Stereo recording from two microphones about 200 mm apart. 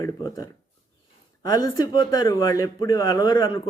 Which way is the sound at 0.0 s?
15° left (ahead or behind).